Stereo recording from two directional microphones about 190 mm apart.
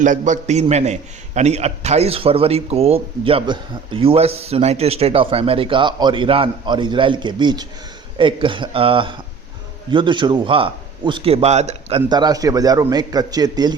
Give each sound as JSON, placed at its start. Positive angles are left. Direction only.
{"t": 0.0, "sound": "a man's voice", "side_deg": -40}